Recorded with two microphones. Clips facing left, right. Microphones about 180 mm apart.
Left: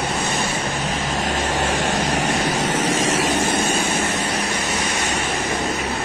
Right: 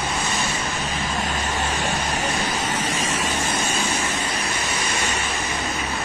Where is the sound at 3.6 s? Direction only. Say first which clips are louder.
Left 4 dB; 55° left (ahead or behind).